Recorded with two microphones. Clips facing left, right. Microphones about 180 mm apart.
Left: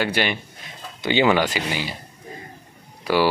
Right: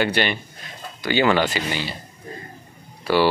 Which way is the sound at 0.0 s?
10° left (ahead or behind).